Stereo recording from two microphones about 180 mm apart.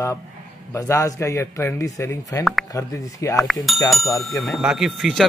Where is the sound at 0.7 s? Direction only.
15° left (ahead or behind).